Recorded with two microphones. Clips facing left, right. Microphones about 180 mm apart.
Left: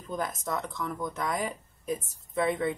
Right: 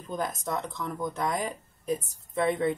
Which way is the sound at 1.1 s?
Centre (ahead or behind).